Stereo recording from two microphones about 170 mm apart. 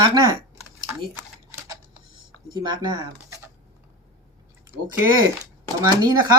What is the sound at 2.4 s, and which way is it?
Speech, 25° right (ahead or behind).